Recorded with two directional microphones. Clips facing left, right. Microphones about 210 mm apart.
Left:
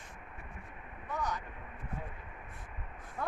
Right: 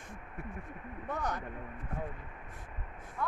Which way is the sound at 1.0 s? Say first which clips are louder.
Right 1 dB; 55° right (ahead or behind).